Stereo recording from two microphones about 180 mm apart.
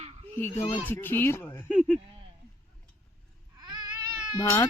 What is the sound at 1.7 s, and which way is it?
Speech, centre (ahead or behind).